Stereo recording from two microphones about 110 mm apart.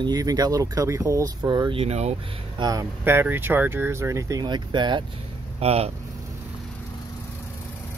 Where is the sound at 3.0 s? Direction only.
20° right (ahead or behind).